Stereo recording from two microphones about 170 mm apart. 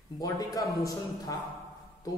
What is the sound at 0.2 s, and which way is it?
A man's voice, 20° left (ahead or behind).